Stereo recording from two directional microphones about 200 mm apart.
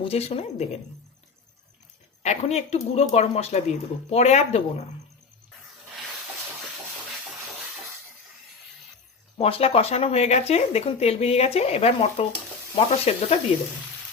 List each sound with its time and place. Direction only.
0.0 s speech: 30° left (ahead or behind)
2.2 s speech: 35° left (ahead or behind)
9.4 s speech: 30° left (ahead or behind)